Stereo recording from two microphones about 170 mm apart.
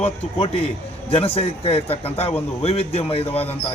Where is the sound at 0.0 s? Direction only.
35° left (ahead or behind).